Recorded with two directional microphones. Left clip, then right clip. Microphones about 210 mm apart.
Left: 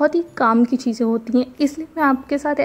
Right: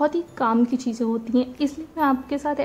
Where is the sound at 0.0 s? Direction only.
20° left (ahead or behind).